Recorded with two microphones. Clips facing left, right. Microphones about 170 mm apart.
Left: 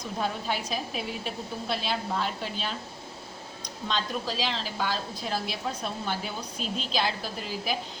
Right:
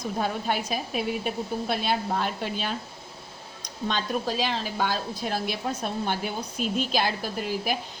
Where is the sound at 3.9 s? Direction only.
55° right (ahead or behind).